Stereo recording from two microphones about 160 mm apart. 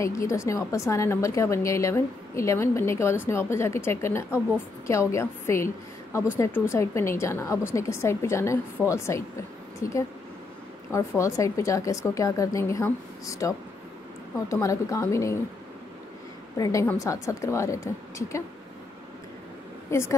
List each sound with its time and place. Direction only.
0.0 s a woman's voice: 20° left (ahead or behind)
10.9 s speech: 20° left (ahead or behind)
16.5 s a woman's voice: 20° left (ahead or behind)
19.9 s a woman's voice: 15° left (ahead or behind)